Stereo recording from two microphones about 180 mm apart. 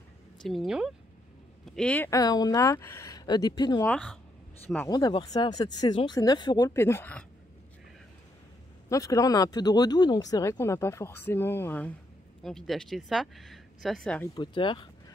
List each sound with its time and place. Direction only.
0.4 s speech: centre (ahead or behind)
1.8 s speech: 10° left (ahead or behind)
3.8 s speech: 5° left (ahead or behind)
4.8 s speech: 25° left (ahead or behind)
8.8 s speech: 15° left (ahead or behind)
14.3 s speech: 25° left (ahead or behind)